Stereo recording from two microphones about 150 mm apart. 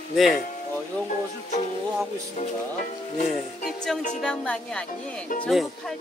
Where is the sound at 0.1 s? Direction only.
Centre (ahead or behind).